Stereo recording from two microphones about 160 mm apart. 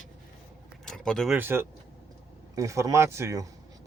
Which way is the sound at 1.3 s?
15° right (ahead or behind).